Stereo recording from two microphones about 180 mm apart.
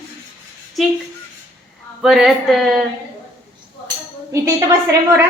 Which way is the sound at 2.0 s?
5° right (ahead or behind).